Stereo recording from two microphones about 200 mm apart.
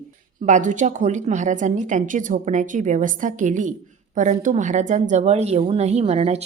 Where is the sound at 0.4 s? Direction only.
40° right (ahead or behind).